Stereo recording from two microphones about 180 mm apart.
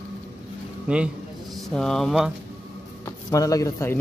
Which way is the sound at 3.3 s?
20° left (ahead or behind).